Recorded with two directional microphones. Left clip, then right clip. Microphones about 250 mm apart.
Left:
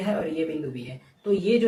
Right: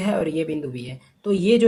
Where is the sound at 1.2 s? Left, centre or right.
Right.